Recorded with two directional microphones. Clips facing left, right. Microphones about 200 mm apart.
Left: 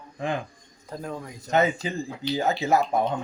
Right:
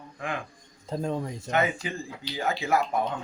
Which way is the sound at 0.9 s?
25° right (ahead or behind).